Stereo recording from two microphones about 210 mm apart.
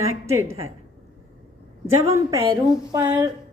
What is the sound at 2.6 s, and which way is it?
Speech, 10° right (ahead or behind).